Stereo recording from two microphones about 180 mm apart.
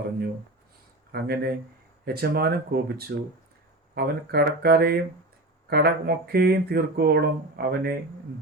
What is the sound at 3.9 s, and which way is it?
Speech, 60° right (ahead or behind).